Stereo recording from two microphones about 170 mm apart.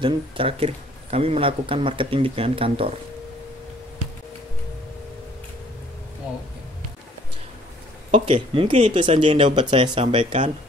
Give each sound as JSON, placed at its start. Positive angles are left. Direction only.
{"t": 0.0, "sound": "speech", "side_deg": -35}
{"t": 8.1, "sound": "speech", "side_deg": -35}